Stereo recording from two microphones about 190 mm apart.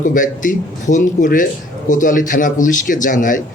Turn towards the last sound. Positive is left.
turn(degrees=45)  # may be behind; listen again after turning